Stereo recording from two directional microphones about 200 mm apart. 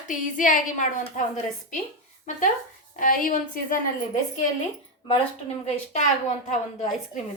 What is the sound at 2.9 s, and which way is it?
Speech, 45° left (ahead or behind).